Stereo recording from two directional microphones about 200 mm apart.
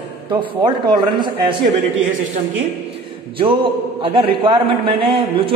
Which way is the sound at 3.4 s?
25° right (ahead or behind).